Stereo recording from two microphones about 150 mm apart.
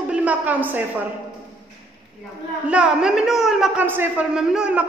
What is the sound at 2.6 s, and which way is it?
A woman's voice, 5° right (ahead or behind).